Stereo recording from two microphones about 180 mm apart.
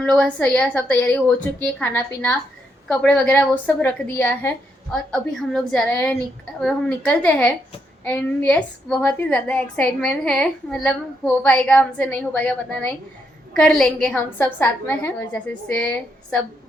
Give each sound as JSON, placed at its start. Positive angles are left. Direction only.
{"t": 0.0, "sound": "a woman's voice", "side_deg": 5}